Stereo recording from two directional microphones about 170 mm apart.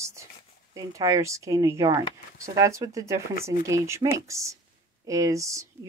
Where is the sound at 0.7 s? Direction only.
20° right (ahead or behind).